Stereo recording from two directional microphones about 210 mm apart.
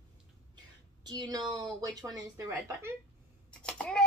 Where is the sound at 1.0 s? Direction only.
20° right (ahead or behind).